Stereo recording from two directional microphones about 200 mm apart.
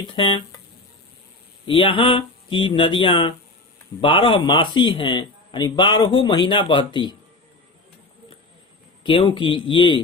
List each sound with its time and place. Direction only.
0.0 s a man's voice: 25° left (ahead or behind)
1.7 s a man's voice: 25° left (ahead or behind)
9.0 s a man's voice: 25° left (ahead or behind)